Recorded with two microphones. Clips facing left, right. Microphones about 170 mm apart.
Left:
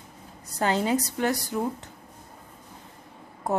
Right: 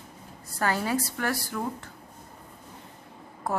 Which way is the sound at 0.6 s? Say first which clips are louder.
Left 3 dB; 20° left (ahead or behind).